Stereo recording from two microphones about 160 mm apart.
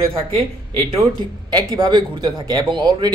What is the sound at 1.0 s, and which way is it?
Speech, 25° right (ahead or behind).